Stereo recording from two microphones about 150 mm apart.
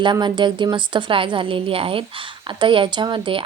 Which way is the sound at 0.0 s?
30° right (ahead or behind).